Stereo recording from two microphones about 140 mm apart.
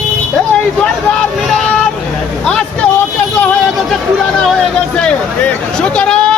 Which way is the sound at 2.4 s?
5° left (ahead or behind).